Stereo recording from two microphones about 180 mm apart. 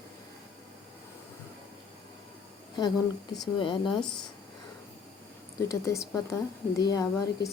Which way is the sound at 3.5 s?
25° left (ahead or behind).